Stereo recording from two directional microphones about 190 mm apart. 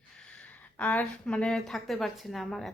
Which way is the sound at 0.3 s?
5° left (ahead or behind).